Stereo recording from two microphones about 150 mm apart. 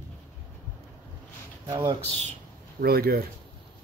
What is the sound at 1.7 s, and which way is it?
Speech, 30° right (ahead or behind).